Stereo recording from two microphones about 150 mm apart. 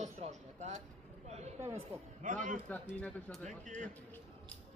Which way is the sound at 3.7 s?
55° right (ahead or behind).